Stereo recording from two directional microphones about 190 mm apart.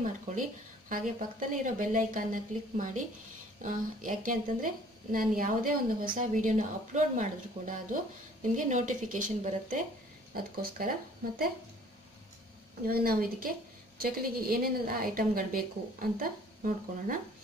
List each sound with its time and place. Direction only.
0.0 s a woman's voice: 45° right (ahead or behind)
12.8 s a woman's voice: 50° right (ahead or behind)